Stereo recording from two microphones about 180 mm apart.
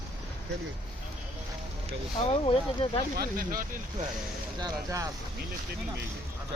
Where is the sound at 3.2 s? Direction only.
55° right (ahead or behind).